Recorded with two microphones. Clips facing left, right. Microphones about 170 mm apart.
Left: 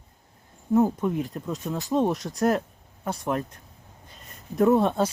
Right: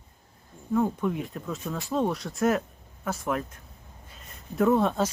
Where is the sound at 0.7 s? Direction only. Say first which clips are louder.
Left 4 dB; 20° left (ahead or behind).